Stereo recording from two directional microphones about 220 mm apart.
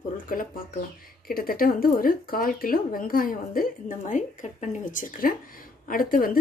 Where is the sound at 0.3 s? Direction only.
40° left (ahead or behind).